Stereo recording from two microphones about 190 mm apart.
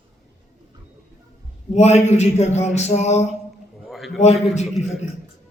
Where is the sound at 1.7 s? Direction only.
35° left (ahead or behind).